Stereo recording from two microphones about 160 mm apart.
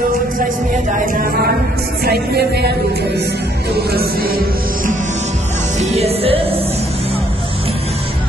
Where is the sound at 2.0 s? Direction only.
85° right; by 4.4 s 65° right (ahead or behind).